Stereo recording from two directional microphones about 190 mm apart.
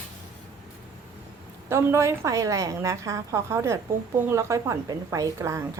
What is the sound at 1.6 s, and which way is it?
A woman's voice, 15° right (ahead or behind).